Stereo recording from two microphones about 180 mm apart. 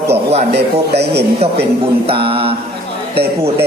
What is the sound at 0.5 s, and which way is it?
Speech, 65° right (ahead or behind).